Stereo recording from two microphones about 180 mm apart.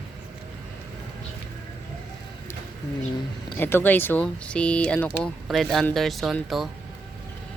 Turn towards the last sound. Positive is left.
turn(degrees=0)  # may be behind; listen again after turning